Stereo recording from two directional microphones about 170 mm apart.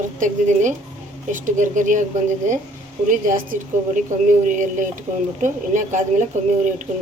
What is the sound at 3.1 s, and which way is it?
Speech, 50° right (ahead or behind).